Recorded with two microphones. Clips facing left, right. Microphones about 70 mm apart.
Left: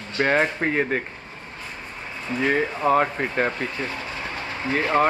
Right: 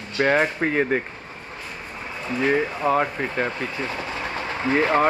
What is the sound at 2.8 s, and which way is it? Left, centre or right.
Speech, centre.